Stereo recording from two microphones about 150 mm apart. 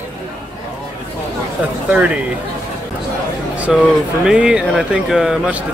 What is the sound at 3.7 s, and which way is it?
Speech, 5° right (ahead or behind).